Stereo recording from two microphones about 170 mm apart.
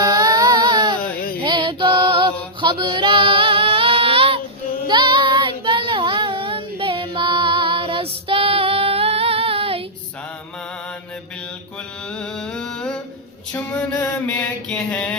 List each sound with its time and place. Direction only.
0.0 s music: 20° right (ahead or behind)
4.9 s child singing: 25° right (ahead or behind)
12.1 s a sound: 5° left (ahead or behind)
13.5 s music: 10° left (ahead or behind)
14.7 s mantra: 5° left (ahead or behind)